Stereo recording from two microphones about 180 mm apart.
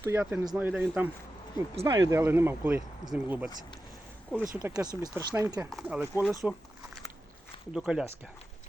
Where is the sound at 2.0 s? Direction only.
15° right (ahead or behind).